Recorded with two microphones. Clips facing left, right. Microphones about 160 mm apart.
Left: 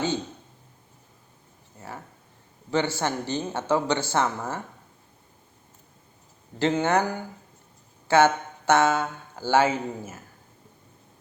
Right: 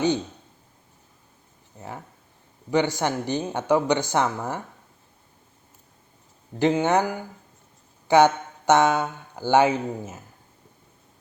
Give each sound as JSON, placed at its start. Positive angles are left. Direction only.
{"t": 2.6, "sound": "speech", "side_deg": -15}
{"t": 6.6, "sound": "speech", "side_deg": -15}